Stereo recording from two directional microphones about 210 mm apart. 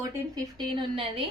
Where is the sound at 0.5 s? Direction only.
25° right (ahead or behind).